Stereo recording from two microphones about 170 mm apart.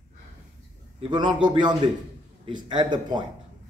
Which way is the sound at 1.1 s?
25° right (ahead or behind).